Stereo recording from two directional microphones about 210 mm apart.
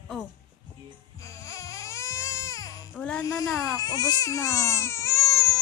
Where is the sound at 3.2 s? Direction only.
15° left (ahead or behind).